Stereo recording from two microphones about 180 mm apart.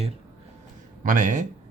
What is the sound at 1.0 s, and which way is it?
Speech, 45° right (ahead or behind).